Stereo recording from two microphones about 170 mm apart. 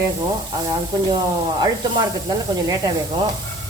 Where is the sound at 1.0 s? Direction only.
25° right (ahead or behind).